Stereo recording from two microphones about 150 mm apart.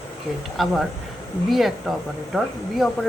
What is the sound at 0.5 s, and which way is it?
Speech, centre (ahead or behind).